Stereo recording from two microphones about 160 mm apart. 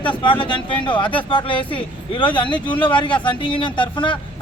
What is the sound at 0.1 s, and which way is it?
Speech, 30° left (ahead or behind).